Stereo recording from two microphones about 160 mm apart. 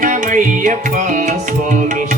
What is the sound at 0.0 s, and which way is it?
Music, 50° right (ahead or behind).